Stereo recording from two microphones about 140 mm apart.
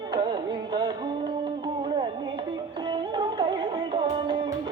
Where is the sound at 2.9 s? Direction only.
35° right (ahead or behind).